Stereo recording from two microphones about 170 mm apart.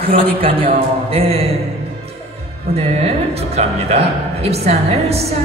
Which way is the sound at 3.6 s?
40° right (ahead or behind).